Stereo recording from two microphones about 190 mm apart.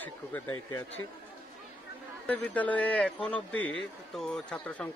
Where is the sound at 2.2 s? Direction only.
10° left (ahead or behind).